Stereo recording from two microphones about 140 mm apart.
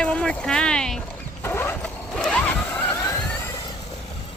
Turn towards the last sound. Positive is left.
turn(degrees=20)  # may be behind; listen again after turning